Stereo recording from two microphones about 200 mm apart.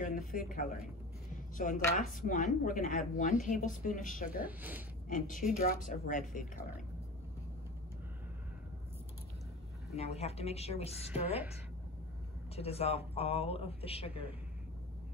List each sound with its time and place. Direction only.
0.3 s speech: 45° left (ahead or behind)
1.6 s speech: 40° left (ahead or behind)
4.4 s a woman's voice: 10° right (ahead or behind)
5.0 s a woman's voice: 40° left (ahead or behind)
9.9 s speech: 30° left (ahead or behind)
12.5 s speech: 30° left (ahead or behind)